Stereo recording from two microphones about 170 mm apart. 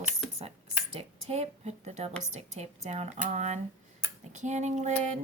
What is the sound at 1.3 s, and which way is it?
Speech, 40° right (ahead or behind).